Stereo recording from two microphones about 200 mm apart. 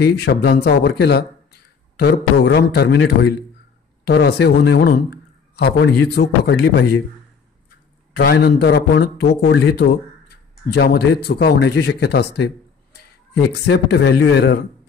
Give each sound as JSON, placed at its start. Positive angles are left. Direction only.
{"t": 0.0, "sound": "a man's voice", "side_deg": 55}
{"t": 4.1, "sound": "a man's voice", "side_deg": 55}
{"t": 8.1, "sound": "a man's voice", "side_deg": 50}